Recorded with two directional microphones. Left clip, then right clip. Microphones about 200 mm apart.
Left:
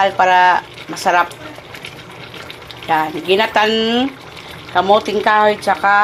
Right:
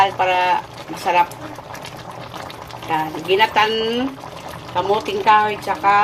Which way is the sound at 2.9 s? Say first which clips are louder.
Left 4 dB; 35° left (ahead or behind).